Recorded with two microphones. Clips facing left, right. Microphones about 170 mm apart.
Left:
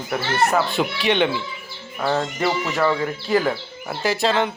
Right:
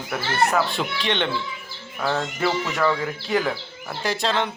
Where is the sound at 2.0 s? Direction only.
20° left (ahead or behind).